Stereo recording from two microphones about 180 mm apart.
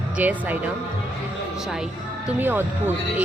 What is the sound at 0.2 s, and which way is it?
Speech, 10° right (ahead or behind).